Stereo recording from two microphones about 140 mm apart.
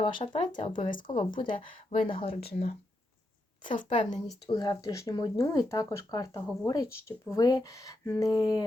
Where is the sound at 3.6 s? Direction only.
65° left (ahead or behind).